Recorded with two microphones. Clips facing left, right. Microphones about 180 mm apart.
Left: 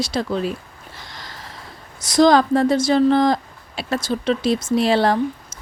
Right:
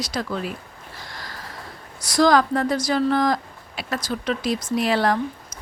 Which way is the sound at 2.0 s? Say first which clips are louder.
Left 3 dB; 20° left (ahead or behind).